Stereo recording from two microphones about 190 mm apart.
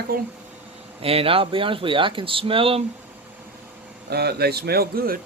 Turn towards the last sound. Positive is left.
turn(degrees=-50)  # may be behind; listen again after turning